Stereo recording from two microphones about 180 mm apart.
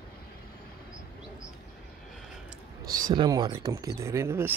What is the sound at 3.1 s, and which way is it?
Speech, 25° right (ahead or behind).